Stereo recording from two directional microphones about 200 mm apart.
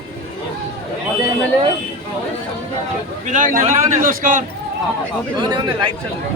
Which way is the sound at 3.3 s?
40° right (ahead or behind).